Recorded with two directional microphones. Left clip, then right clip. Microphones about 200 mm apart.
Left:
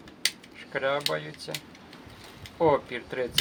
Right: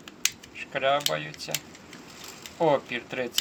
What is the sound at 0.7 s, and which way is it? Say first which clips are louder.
Speech: right 3 dB; 25° left (ahead or behind).